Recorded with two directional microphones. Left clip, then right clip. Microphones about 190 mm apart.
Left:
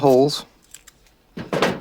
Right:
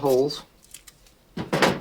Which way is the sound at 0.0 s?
55° left (ahead or behind).